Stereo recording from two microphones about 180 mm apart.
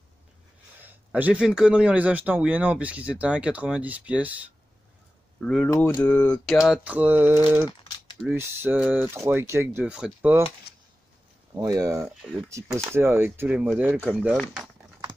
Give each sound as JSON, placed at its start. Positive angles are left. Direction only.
{"t": 0.7, "sound": "speech", "side_deg": -10}
{"t": 5.4, "sound": "speech", "side_deg": 5}
{"t": 11.5, "sound": "speech", "side_deg": -20}
{"t": 14.3, "sound": "speech", "side_deg": 5}